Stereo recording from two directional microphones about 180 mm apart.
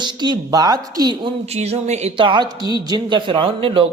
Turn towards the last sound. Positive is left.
turn(degrees=-30)  # may be behind; listen again after turning